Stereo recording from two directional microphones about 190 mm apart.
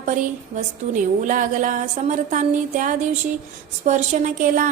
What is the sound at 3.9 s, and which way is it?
Speech, 45° right (ahead or behind).